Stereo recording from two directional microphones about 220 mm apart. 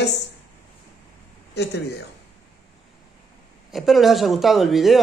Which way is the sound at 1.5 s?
50° left (ahead or behind).